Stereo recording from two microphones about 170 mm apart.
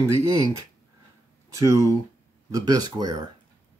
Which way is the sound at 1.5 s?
20° right (ahead or behind).